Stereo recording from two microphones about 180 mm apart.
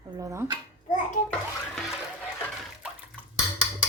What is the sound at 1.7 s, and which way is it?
Music, centre (ahead or behind).